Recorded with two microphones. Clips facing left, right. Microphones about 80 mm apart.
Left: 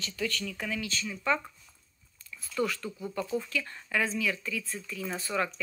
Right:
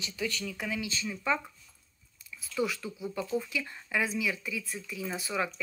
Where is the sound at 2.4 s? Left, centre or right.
Centre.